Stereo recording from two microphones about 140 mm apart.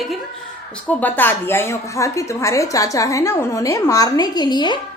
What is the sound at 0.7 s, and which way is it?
A woman's voice, 10° left (ahead or behind).